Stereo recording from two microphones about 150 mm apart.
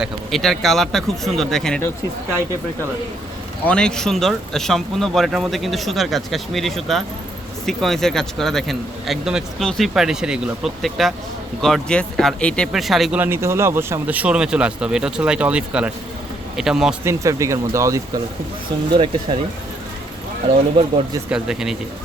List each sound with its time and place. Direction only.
0.0 s speech: centre (ahead or behind)
3.7 s speech: 5° left (ahead or behind)
13.1 s speech: 15° right (ahead or behind)
17.0 s speech: 20° right (ahead or behind)
18.9 s speech: 35° right (ahead or behind)
21.2 s speech: 5° right (ahead or behind)